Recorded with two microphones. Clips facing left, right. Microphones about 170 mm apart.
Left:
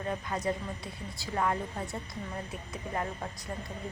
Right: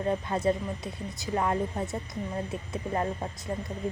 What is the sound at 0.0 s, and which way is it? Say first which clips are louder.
Speech: right 6 dB; 25° right (ahead or behind).